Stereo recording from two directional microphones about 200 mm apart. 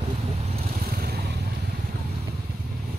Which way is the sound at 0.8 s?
50° right (ahead or behind).